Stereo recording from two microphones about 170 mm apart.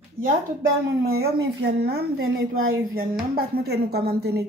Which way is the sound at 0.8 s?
65° right (ahead or behind).